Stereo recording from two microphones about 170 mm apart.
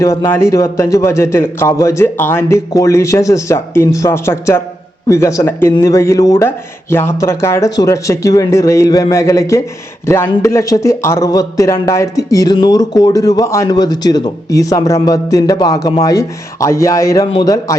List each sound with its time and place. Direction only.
0.0 s a man's voice: 20° left (ahead or behind)